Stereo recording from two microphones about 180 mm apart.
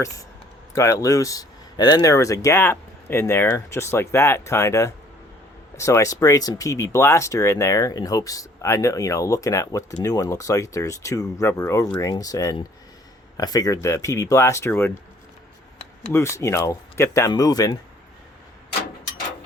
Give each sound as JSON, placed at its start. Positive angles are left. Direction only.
{"t": 0.8, "sound": "speech", "side_deg": 15}
{"t": 16.1, "sound": "speech", "side_deg": 15}